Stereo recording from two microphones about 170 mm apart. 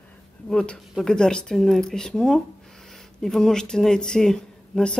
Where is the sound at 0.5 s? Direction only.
5° left (ahead or behind).